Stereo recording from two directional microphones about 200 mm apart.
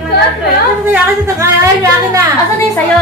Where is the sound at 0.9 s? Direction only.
15° right (ahead or behind).